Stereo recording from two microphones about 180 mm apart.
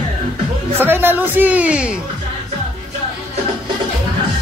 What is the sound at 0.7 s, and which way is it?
A woman's voice, 10° right (ahead or behind).